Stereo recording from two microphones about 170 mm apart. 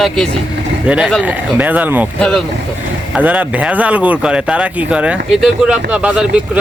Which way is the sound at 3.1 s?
10° right (ahead or behind).